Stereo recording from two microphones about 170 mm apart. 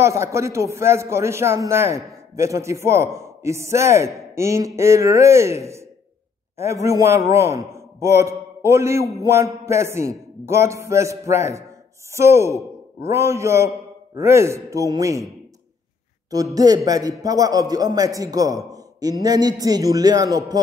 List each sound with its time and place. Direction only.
0.0 s a man's voice: 15° right (ahead or behind)
16.5 s a man's voice: 20° right (ahead or behind)